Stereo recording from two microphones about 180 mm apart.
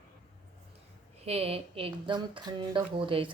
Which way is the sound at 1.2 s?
35° right (ahead or behind).